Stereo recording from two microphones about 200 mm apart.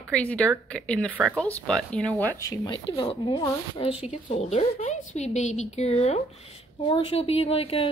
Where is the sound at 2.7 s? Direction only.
25° left (ahead or behind).